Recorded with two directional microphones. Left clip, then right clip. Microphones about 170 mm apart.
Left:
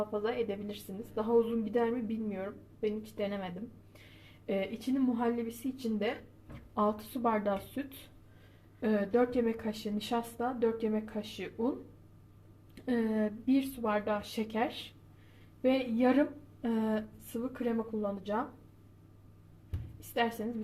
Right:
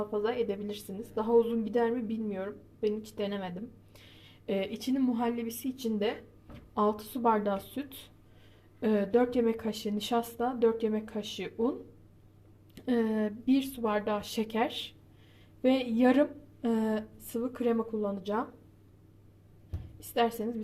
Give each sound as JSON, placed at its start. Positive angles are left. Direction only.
{"t": 0.0, "sound": "speech", "side_deg": -15}
{"t": 12.7, "sound": "speech", "side_deg": -15}
{"t": 20.1, "sound": "speech", "side_deg": -15}